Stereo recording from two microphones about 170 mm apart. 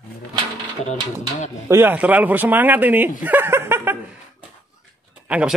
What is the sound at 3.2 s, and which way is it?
Chuckle, 10° right (ahead or behind).